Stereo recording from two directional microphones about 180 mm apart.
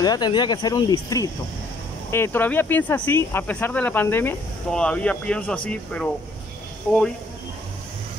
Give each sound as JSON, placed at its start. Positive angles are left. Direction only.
{"t": 0.0, "sound": "speech", "side_deg": 25}